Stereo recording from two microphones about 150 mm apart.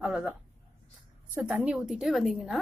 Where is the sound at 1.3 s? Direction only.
5° right (ahead or behind).